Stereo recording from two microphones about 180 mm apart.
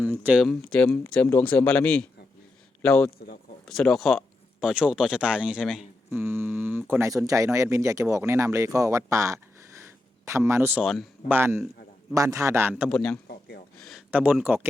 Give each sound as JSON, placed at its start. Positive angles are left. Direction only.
{"t": 0.0, "sound": "speech", "side_deg": -10}
{"t": 0.7, "sound": "speech", "side_deg": 5}
{"t": 11.3, "sound": "speech", "side_deg": -15}
{"t": 12.9, "sound": "speech", "side_deg": 5}
{"t": 14.1, "sound": "speech", "side_deg": -10}